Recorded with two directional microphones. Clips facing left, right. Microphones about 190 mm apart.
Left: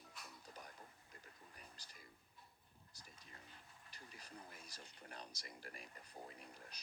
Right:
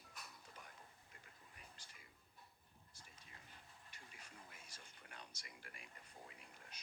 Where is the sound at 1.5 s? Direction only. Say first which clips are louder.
Left 2 dB; 40° left (ahead or behind).